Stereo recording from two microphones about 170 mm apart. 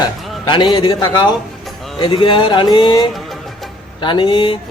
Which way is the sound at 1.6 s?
Centre (ahead or behind).